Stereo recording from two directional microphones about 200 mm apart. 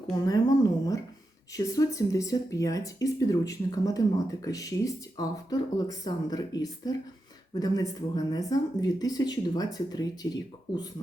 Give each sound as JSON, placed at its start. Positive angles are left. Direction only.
{"t": 0.1, "sound": "speech", "side_deg": 20}